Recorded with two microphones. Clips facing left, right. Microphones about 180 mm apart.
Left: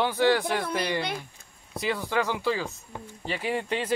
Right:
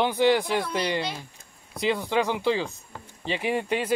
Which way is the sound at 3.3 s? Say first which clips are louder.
Right 3 dB; 20° right (ahead or behind).